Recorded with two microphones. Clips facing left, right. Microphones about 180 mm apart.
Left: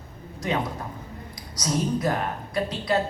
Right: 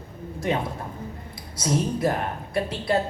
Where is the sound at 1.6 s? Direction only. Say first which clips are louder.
Right 1 dB; 25° right (ahead or behind).